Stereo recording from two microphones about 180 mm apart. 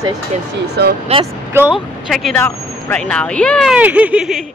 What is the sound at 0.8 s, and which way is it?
Speech, 65° right (ahead or behind).